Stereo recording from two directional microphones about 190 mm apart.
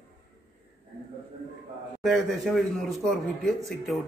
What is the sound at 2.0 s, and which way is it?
A man's voice, centre (ahead or behind).